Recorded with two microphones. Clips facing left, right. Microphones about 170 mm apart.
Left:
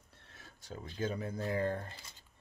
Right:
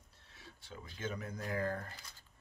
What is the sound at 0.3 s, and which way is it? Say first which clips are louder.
Speech: left 4 dB; 45° left (ahead or behind).